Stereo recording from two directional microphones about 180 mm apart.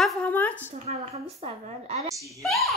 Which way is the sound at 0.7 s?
35° right (ahead or behind).